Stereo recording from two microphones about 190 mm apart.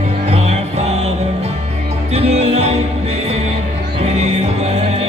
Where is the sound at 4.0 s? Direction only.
35° right (ahead or behind).